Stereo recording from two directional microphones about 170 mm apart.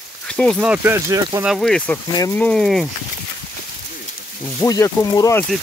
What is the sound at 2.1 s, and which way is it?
Speech, 20° left (ahead or behind).